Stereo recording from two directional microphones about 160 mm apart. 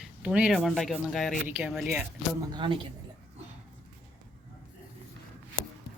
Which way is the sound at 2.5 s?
30° right (ahead or behind).